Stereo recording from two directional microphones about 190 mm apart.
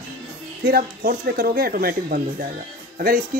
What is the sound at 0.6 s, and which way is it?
Speech, 50° right (ahead or behind).